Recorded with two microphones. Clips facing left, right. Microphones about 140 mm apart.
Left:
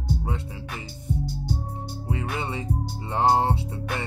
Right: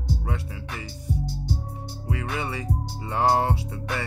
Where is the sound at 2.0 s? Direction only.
25° left (ahead or behind).